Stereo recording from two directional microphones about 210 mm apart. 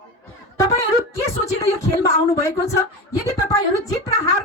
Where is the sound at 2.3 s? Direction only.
15° left (ahead or behind).